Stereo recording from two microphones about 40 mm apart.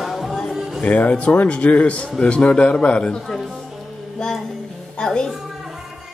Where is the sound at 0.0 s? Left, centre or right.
Centre.